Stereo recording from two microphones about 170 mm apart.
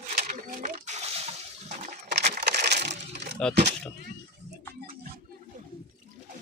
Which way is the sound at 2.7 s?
45° right (ahead or behind).